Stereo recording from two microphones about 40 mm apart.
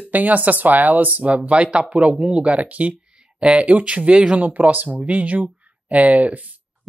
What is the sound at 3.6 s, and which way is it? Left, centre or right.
Speech, right.